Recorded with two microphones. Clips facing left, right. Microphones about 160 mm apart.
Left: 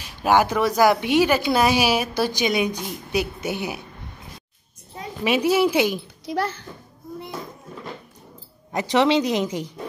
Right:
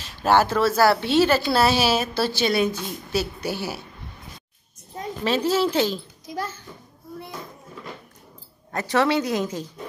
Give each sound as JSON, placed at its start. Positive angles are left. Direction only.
{"t": 0.0, "sound": "a woman's voice", "side_deg": 15}
{"t": 5.2, "sound": "a woman's voice", "side_deg": 15}
{"t": 6.2, "sound": "a child's voice", "side_deg": 70}
{"t": 8.7, "sound": "a woman's voice", "side_deg": 15}